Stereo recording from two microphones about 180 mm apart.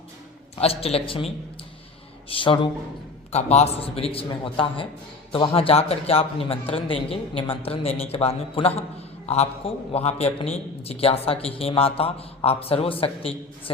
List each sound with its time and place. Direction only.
0.6 s a man's voice: 35° left (ahead or behind)
2.3 s a man's voice: 30° left (ahead or behind)